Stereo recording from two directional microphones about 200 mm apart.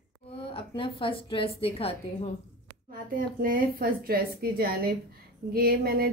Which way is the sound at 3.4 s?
45° right (ahead or behind).